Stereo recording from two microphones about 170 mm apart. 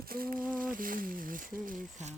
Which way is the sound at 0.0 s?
60° right (ahead or behind).